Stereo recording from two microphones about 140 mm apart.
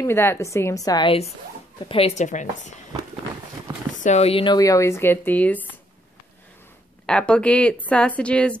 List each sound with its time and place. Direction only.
0.0 s a woman's voice: 15° left (ahead or behind)
1.9 s a woman's voice: 45° left (ahead or behind)
4.0 s speech: 50° left (ahead or behind)
4.6 s speech: 20° left (ahead or behind)
7.1 s speech: 5° left (ahead or behind)